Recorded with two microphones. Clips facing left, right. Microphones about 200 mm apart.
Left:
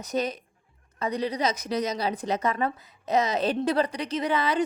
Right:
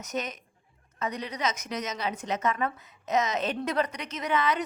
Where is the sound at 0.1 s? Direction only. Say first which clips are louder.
Left 6 dB; 35° left (ahead or behind).